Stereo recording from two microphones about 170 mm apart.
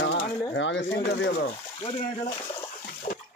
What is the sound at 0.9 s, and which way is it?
Speech, 75° left (ahead or behind).